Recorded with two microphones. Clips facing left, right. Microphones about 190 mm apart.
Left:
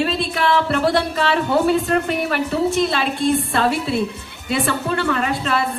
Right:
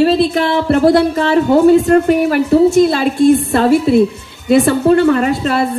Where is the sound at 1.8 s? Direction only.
45° right (ahead or behind).